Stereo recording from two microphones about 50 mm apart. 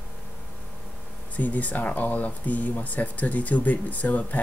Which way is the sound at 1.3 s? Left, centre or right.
Left.